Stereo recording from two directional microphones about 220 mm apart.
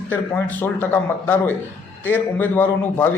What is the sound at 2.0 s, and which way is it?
A man's voice, 10° left (ahead or behind).